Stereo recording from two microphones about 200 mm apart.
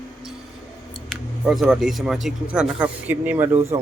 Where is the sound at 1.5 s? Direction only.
Centre (ahead or behind).